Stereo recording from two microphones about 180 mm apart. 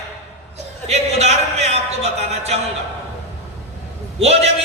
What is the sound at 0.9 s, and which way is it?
A man's voice, 35° right (ahead or behind).